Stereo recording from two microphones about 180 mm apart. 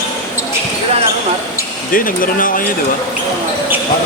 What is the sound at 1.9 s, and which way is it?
Speech, 50° left (ahead or behind).